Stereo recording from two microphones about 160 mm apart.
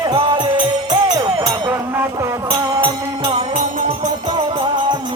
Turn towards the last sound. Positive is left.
turn(degrees=-30)  # may be behind; listen again after turning